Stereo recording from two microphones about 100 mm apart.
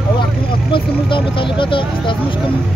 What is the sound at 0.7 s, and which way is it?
Speech, 60° left (ahead or behind).